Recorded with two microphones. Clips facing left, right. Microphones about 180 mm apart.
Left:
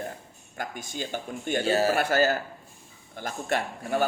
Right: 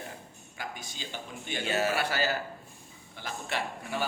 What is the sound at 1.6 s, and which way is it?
A man's voice, 35° left (ahead or behind).